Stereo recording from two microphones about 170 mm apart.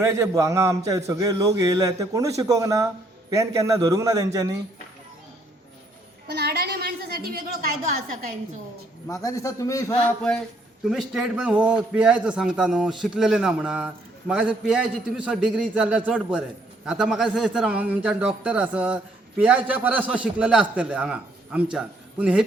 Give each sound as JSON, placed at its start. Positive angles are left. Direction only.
{"t": 0.0, "sound": "a man's voice", "side_deg": -15}
{"t": 6.2, "sound": "a woman's voice", "side_deg": -70}
{"t": 9.0, "sound": "a man's voice", "side_deg": 20}
{"t": 10.8, "sound": "a man's voice", "side_deg": -5}